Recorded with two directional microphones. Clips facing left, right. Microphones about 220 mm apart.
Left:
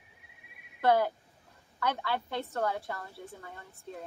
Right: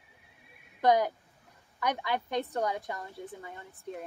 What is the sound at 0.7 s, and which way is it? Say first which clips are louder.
A woman's voice: right 1 dB; 15° right (ahead or behind).